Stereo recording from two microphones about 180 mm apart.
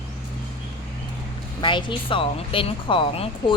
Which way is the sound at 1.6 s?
25° left (ahead or behind).